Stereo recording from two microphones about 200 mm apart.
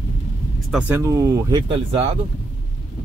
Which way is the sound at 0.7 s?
10° right (ahead or behind).